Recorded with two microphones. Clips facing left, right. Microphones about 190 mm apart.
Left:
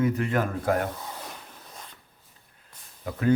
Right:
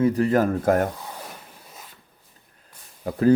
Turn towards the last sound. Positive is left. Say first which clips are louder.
# right 7 dB
turn(degrees=-35)  # may be behind; listen again after turning